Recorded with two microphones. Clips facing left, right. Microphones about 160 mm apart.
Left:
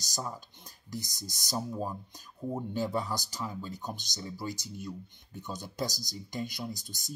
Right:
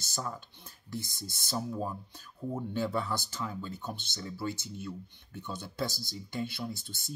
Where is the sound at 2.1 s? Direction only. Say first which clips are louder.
Left 1 dB; 15° left (ahead or behind).